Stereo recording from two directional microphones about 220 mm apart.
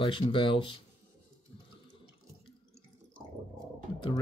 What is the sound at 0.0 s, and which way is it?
Speech, 20° left (ahead or behind).